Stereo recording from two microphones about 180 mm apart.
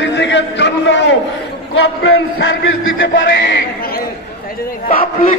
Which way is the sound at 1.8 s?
80° left.